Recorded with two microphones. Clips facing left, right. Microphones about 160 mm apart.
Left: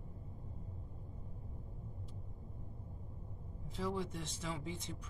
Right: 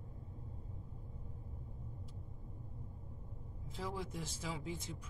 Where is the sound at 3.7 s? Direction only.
Centre (ahead or behind).